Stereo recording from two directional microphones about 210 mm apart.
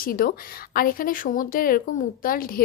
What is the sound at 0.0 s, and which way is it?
A woman's voice, 45° left (ahead or behind).